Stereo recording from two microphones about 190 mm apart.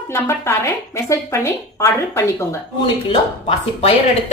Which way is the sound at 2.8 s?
25° left (ahead or behind).